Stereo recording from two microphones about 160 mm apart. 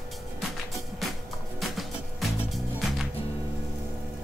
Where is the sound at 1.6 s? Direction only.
Centre (ahead or behind).